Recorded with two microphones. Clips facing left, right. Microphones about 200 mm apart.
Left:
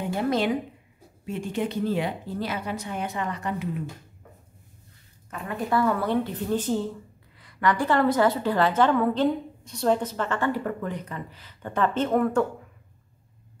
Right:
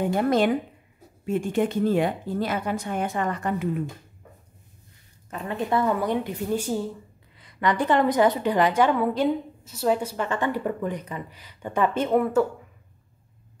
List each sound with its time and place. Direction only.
0.0 s a woman's voice: 50° right (ahead or behind)
5.3 s a woman's voice: 20° right (ahead or behind)
7.3 s a woman's voice: 20° right (ahead or behind)